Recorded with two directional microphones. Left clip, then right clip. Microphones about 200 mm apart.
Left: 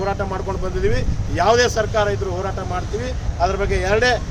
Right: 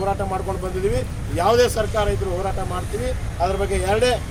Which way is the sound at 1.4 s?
Centre (ahead or behind).